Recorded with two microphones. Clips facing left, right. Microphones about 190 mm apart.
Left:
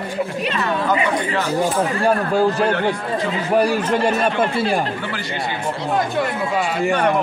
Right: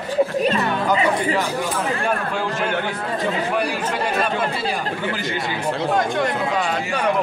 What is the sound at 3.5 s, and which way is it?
Speech, 45° left (ahead or behind).